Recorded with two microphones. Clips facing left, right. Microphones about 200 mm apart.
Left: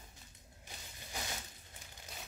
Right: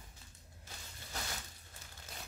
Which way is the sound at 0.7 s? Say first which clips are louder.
Even; 15° left (ahead or behind).